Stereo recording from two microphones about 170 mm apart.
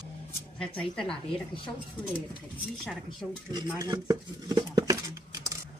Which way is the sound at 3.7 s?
20° right (ahead or behind).